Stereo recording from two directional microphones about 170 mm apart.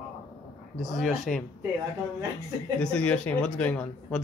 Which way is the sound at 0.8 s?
Centre (ahead or behind).